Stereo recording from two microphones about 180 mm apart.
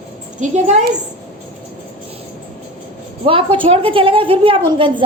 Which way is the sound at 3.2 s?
30° right (ahead or behind).